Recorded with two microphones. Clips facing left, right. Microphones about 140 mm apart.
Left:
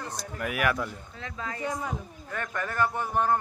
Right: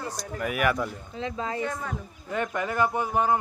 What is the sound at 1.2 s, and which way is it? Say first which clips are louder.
Speech: right 7 dB; 25° right (ahead or behind).